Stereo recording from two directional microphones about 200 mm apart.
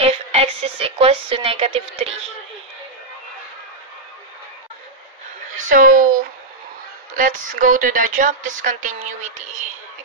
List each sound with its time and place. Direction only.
0.0 s speech: 30° right (ahead or behind)
5.7 s a woman's voice: 40° right (ahead or behind)
7.2 s a woman's voice: 40° right (ahead or behind)